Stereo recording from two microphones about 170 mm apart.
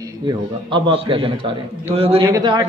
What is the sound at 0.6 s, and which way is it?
A man's voice, 30° right (ahead or behind).